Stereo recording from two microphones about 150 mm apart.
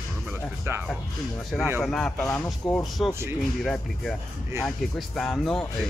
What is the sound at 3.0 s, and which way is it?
Speech, centre (ahead or behind).